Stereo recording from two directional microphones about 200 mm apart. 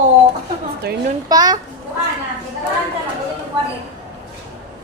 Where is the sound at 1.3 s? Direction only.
20° right (ahead or behind).